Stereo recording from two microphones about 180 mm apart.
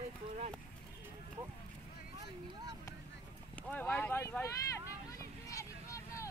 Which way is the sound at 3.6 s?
10° left (ahead or behind).